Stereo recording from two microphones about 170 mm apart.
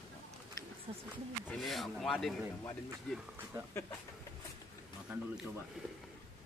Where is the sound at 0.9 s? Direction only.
30° right (ahead or behind).